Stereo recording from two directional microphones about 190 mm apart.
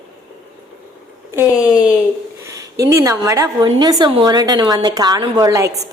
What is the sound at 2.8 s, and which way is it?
A woman's voice, 15° right (ahead or behind).